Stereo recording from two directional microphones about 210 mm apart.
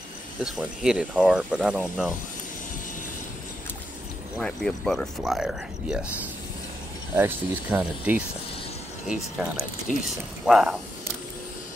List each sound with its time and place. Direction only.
0.4 s speech: centre (ahead or behind)
4.4 s speech: 5° left (ahead or behind)
7.2 s speech: 10° right (ahead or behind)
9.9 s speech: 35° left (ahead or behind)
10.4 s speech: centre (ahead or behind)